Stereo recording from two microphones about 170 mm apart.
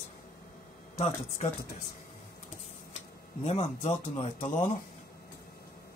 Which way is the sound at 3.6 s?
35° left (ahead or behind).